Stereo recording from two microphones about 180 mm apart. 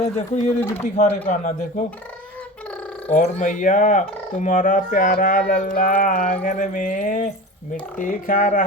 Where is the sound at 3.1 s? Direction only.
45° left (ahead or behind).